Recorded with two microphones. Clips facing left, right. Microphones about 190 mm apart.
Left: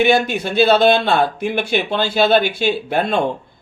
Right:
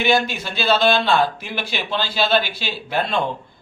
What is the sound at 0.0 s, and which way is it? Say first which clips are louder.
A man's voice: left 4 dB; 55° left (ahead or behind).